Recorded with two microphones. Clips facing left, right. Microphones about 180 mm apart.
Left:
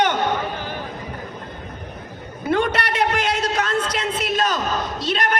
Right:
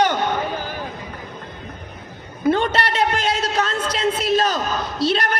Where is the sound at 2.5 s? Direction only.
30° right (ahead or behind).